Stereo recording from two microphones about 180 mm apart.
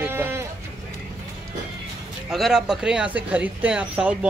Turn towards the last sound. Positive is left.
turn(degrees=-5)  # may be behind; listen again after turning